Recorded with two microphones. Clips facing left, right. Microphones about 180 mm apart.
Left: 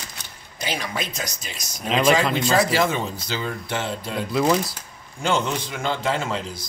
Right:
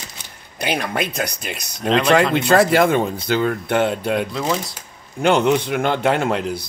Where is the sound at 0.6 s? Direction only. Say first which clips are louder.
Right 6 dB; 60° right (ahead or behind).